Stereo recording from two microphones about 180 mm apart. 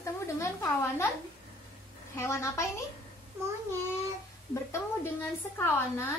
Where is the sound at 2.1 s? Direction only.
15° left (ahead or behind).